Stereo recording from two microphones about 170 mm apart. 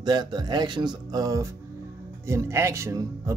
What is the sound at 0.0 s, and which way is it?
Speech, 25° right (ahead or behind).